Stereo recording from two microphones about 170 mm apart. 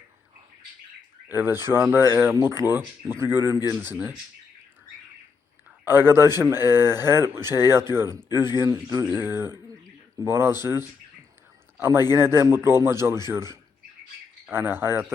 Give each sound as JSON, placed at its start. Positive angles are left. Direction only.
{"t": 1.3, "sound": "speech", "side_deg": -10}
{"t": 5.8, "sound": "speech", "side_deg": -15}